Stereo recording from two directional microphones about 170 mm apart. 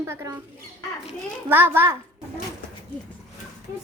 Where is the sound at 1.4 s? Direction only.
10° right (ahead or behind).